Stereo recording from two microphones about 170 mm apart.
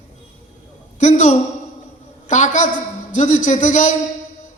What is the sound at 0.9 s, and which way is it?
A woman's voice, 45° left (ahead or behind).